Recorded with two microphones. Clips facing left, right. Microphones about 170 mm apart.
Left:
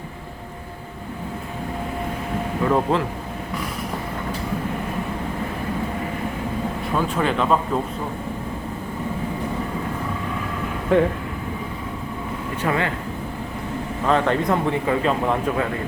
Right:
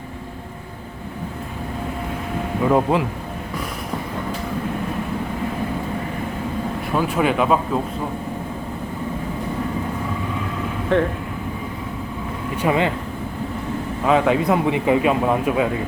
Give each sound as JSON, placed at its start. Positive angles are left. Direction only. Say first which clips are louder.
{"t": 2.6, "sound": "speech", "louder": "right 3 dB", "side_deg": -10}
{"t": 6.9, "sound": "speech", "louder": "right 3 dB", "side_deg": -10}
{"t": 10.9, "sound": "speech", "louder": "left 1 dB", "side_deg": 5}
{"t": 12.6, "sound": "speech", "louder": "right 4 dB", "side_deg": -15}
{"t": 14.1, "sound": "speech", "louder": "right 3 dB", "side_deg": -5}